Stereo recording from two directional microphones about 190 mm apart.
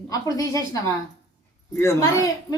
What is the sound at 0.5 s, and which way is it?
A child's voice, 20° left (ahead or behind).